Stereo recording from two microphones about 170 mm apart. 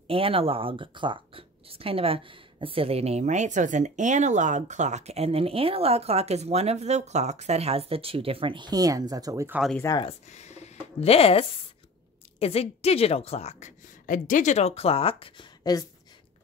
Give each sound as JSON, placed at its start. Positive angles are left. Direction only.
{"t": 0.1, "sound": "speech", "side_deg": -35}
{"t": 9.8, "sound": "speech", "side_deg": 20}
{"t": 10.0, "sound": "a woman's voice", "side_deg": 40}